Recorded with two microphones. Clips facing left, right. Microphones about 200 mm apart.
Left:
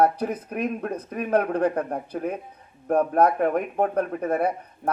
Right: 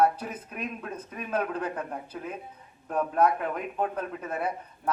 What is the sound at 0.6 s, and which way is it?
A man's voice, 60° left (ahead or behind).